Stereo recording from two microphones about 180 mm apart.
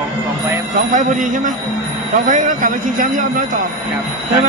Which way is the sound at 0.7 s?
45° right (ahead or behind).